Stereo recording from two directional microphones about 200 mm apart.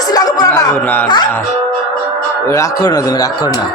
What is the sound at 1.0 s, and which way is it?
Speech, 20° left (ahead or behind).